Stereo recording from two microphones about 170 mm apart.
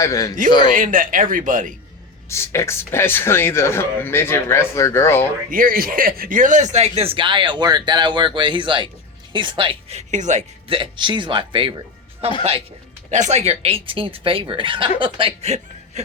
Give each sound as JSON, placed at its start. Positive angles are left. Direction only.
{"t": 0.0, "sound": "a man's voice", "side_deg": 20}
{"t": 0.6, "sound": "speech", "side_deg": -50}
{"t": 2.3, "sound": "speech", "side_deg": 15}
{"t": 5.5, "sound": "speech", "side_deg": -55}
{"t": 10.7, "sound": "speech", "side_deg": -30}